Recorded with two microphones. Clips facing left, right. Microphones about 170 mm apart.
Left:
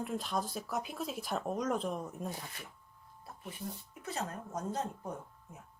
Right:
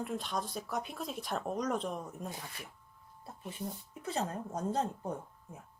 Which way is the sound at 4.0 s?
30° right (ahead or behind).